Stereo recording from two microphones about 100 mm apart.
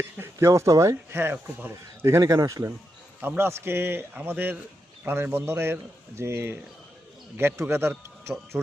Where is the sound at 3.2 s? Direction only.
25° right (ahead or behind).